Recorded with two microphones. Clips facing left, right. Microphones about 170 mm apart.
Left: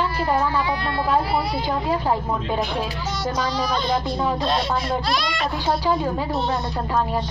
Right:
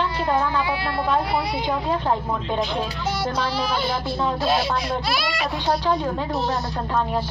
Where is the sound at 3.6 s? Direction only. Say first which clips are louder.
Left 2 dB; 10° right (ahead or behind).